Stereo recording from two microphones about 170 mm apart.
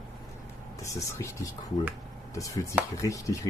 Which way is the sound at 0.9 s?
20° left (ahead or behind).